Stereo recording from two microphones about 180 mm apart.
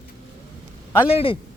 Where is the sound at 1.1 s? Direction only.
30° left (ahead or behind).